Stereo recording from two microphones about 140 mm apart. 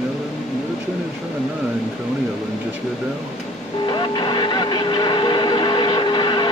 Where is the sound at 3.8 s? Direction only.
35° left (ahead or behind).